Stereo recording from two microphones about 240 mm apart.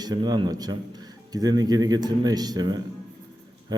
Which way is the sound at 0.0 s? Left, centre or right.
Centre.